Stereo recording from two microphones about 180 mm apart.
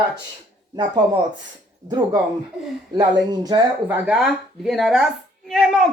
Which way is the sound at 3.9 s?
5° right (ahead or behind).